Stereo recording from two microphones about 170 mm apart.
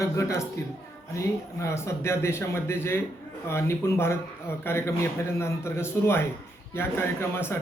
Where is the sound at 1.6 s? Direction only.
15° left (ahead or behind).